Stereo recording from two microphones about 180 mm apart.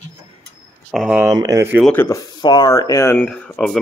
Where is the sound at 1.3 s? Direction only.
20° right (ahead or behind).